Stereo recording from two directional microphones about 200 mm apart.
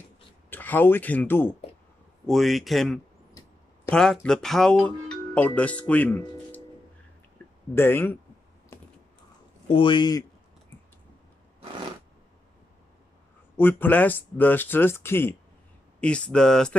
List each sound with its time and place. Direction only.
0.5 s speech: 10° left (ahead or behind)
7.7 s speech: 10° left (ahead or behind)
9.7 s speech: 25° left (ahead or behind)
13.6 s speech: 10° left (ahead or behind)